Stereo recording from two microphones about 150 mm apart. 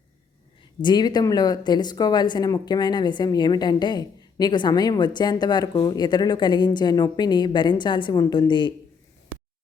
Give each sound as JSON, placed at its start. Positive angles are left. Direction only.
{"t": 0.8, "sound": "speech", "side_deg": 30}